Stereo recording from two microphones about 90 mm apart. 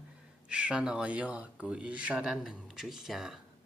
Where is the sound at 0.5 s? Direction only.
10° right (ahead or behind).